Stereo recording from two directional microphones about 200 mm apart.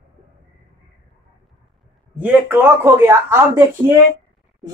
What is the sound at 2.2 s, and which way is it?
Speech, 10° right (ahead or behind).